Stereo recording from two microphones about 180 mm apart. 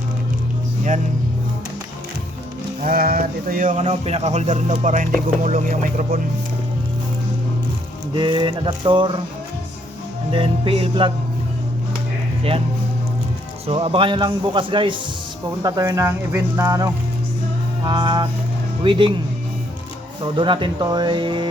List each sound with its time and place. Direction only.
2.8 s a man's voice: 55° right (ahead or behind)
8.1 s a man's voice: 25° right (ahead or behind)
10.3 s a man's voice: 30° right (ahead or behind)
12.4 s speech: 30° right (ahead or behind)
13.7 s a man's voice: 30° right (ahead or behind)
20.2 s a man's voice: 25° right (ahead or behind)